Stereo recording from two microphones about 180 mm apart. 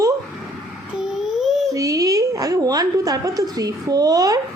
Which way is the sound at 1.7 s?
20° right (ahead or behind).